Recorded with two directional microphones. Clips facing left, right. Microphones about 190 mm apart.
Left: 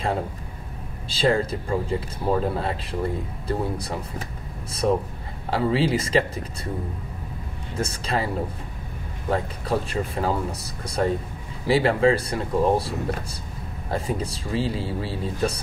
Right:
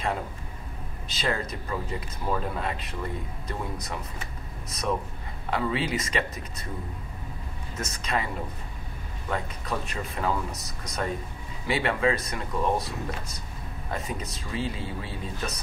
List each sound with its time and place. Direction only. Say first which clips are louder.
1.0 s speech: left 8 dB; 30° left (ahead or behind)
7.7 s speech: left 4 dB; 30° left (ahead or behind)
9.3 s speech: left 7 dB; 30° left (ahead or behind)